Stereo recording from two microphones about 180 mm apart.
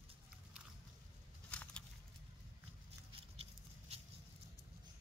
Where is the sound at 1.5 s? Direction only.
5° left (ahead or behind).